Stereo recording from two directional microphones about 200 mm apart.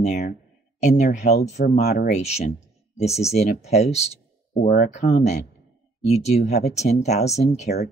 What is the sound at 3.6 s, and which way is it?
Speech, 35° left (ahead or behind).